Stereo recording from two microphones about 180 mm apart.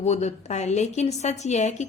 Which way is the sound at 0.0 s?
40° left (ahead or behind).